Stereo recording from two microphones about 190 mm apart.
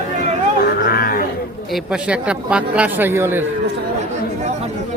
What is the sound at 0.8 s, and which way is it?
Cattle, 50° left (ahead or behind).